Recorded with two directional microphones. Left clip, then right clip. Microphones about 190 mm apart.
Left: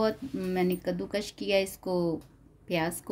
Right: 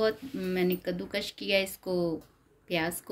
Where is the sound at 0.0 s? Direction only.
55° left (ahead or behind).